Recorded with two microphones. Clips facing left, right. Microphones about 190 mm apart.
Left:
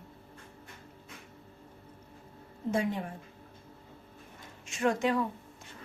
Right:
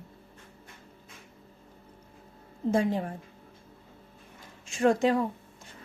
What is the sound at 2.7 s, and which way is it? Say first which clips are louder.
Speech: right 4 dB; 35° right (ahead or behind).